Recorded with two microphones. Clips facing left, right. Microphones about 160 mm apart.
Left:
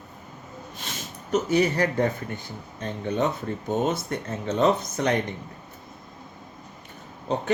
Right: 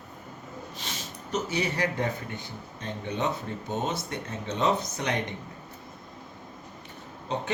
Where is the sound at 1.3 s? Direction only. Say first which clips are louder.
Left 7 dB; 50° left (ahead or behind).